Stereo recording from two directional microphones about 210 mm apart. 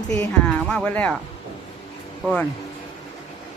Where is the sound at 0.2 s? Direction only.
5° left (ahead or behind).